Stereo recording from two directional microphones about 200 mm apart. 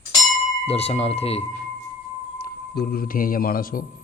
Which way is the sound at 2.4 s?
50° left (ahead or behind).